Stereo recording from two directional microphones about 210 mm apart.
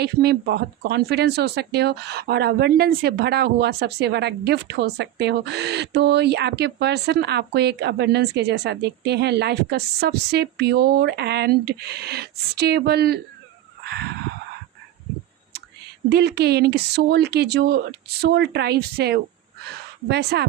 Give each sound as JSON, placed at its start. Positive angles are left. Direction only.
{"t": 0.0, "sound": "speech", "side_deg": -50}
{"t": 13.8, "sound": "a sound", "side_deg": -50}
{"t": 16.0, "sound": "speech", "side_deg": -50}